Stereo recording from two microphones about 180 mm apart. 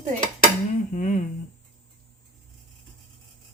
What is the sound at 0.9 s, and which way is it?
Dishes, 45° left (ahead or behind).